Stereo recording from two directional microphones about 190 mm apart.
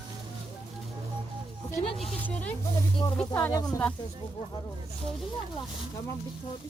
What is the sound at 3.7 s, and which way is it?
Speech, 5° left (ahead or behind).